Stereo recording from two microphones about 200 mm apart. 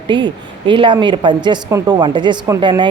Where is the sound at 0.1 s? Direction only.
25° right (ahead or behind).